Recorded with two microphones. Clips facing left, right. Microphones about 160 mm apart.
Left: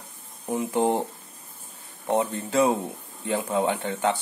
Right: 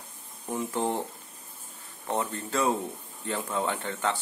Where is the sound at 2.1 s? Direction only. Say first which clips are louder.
Left 6 dB; 15° left (ahead or behind).